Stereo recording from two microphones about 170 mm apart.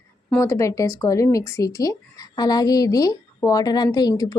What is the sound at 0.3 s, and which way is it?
Speech, 10° left (ahead or behind).